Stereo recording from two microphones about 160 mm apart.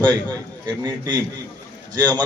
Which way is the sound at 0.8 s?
25° right (ahead or behind).